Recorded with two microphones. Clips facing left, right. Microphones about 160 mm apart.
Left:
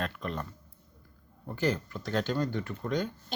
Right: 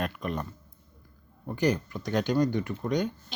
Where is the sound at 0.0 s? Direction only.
15° right (ahead or behind).